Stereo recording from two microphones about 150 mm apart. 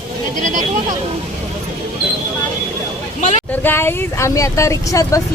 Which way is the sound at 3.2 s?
50° left (ahead or behind).